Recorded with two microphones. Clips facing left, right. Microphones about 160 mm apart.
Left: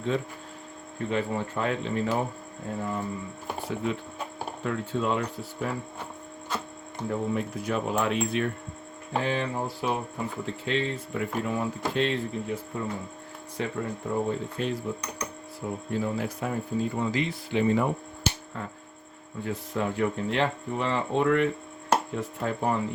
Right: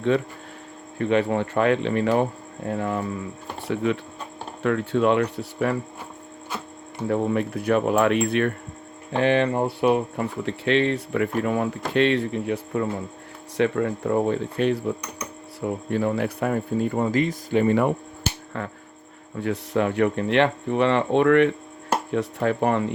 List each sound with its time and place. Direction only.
0.9 s speech: 75° right (ahead or behind)
7.1 s speech: 65° right (ahead or behind)